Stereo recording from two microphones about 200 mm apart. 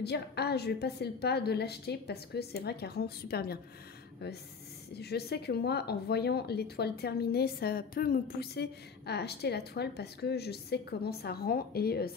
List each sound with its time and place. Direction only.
0.0 s speech: 55° left (ahead or behind)
4.9 s speech: 55° left (ahead or behind)